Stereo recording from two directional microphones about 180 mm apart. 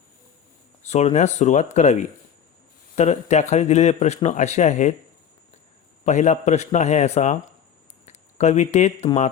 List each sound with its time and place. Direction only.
0.8 s a man's voice: 40° left (ahead or behind)
6.1 s a man's voice: 40° left (ahead or behind)